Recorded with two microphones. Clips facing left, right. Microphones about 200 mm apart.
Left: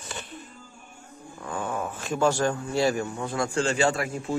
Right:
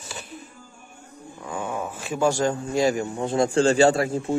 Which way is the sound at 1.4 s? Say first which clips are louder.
Right 1 dB; 10° right (ahead or behind).